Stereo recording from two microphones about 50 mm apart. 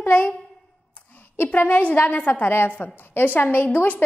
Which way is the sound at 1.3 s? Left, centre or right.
Left.